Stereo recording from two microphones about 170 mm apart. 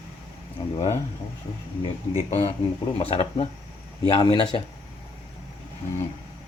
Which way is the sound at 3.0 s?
35° left (ahead or behind).